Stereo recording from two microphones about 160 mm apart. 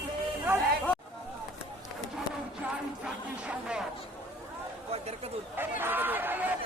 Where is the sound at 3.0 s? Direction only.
5° right (ahead or behind).